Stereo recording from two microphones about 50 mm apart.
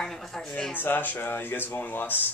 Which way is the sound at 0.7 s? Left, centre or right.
Left.